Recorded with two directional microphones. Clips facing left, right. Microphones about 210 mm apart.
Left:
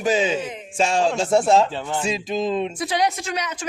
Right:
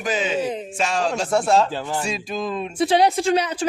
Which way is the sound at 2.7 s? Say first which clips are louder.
Right 5 dB; 30° right (ahead or behind).